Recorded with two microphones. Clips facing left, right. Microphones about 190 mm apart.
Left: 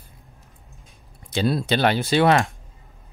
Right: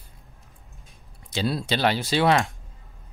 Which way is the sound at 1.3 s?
55° left (ahead or behind).